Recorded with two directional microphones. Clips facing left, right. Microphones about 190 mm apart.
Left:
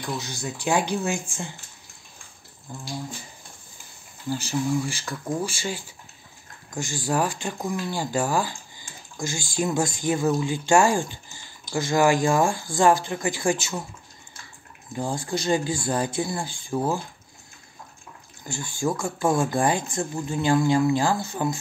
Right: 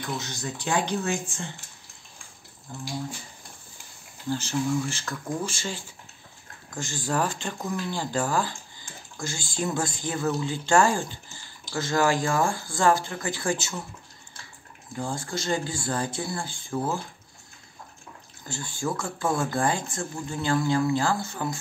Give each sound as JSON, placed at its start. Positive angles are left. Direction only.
{"t": 0.2, "sound": "speech", "side_deg": 10}
{"t": 4.3, "sound": "speech", "side_deg": 10}
{"t": 15.0, "sound": "speech", "side_deg": 15}
{"t": 18.5, "sound": "speech", "side_deg": 15}